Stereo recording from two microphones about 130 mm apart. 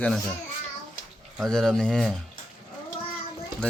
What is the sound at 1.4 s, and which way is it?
Speech, 5° left (ahead or behind).